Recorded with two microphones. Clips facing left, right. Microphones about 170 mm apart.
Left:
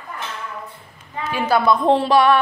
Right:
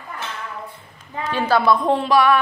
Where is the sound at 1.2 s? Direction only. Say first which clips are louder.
Even; 10° left (ahead or behind).